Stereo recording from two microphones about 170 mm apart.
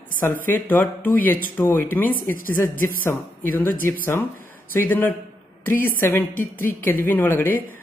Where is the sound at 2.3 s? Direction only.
55° left (ahead or behind).